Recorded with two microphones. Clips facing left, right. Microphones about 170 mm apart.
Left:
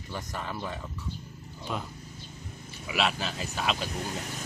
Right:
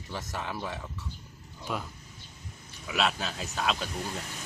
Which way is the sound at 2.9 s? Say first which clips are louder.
Even; 5° left (ahead or behind).